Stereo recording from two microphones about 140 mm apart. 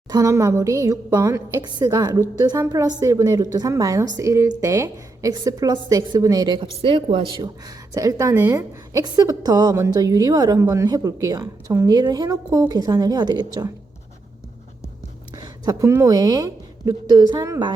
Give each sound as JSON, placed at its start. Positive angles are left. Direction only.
{"t": 0.1, "sound": "a woman's voice", "side_deg": -25}
{"t": 7.9, "sound": "a woman's voice", "side_deg": -20}
{"t": 15.4, "sound": "a woman's voice", "side_deg": -25}